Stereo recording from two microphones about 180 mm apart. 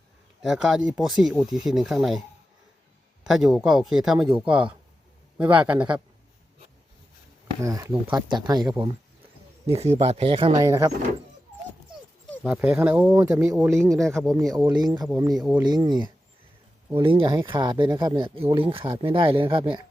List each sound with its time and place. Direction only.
0.4 s speech: centre (ahead or behind)
3.2 s speech: centre (ahead or behind)
7.6 s speech: 15° right (ahead or behind)
9.6 s speech: 35° right (ahead or behind)
10.6 s speech: 15° right (ahead or behind)
12.3 s speech: 5° right (ahead or behind); by 15.1 s 20° right (ahead or behind)
15.3 s speech: centre (ahead or behind)
15.6 s speech: 25° right (ahead or behind)